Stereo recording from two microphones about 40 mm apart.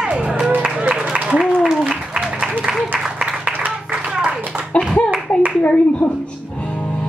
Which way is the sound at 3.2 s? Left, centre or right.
Right.